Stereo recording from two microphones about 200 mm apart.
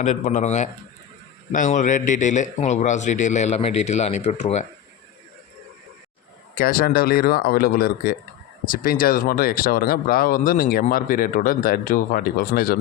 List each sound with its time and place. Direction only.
0.0 s a man's voice: 35° left (ahead or behind)
6.6 s speech: 45° left (ahead or behind)